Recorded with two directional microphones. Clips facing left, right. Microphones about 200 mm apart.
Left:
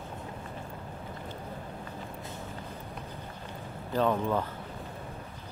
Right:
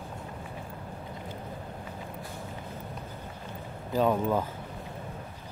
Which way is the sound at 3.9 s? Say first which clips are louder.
Right 2 dB; 10° right (ahead or behind).